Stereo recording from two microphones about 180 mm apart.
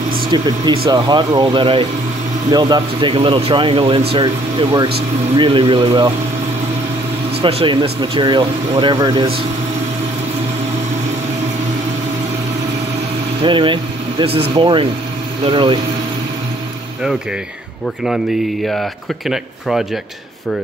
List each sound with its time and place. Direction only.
0.3 s speech: 25° right (ahead or behind)
7.4 s speech: 30° right (ahead or behind)
13.4 s speech: 25° right (ahead or behind)
18.0 s speech: centre (ahead or behind)